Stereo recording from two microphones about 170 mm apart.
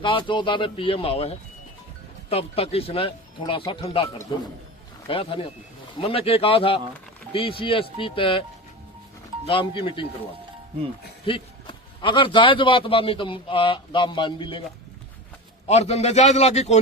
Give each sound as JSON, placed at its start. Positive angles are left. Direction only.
{"t": 0.0, "sound": "a man's voice", "side_deg": 30}
{"t": 9.5, "sound": "speech", "side_deg": 30}
{"t": 11.3, "sound": "a man's voice", "side_deg": 30}
{"t": 15.6, "sound": "speech", "side_deg": 40}